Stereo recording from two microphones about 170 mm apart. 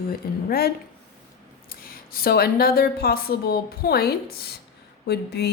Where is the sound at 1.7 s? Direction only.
60° left (ahead or behind).